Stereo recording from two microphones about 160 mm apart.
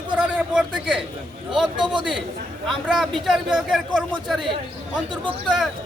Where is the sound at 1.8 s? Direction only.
30° right (ahead or behind).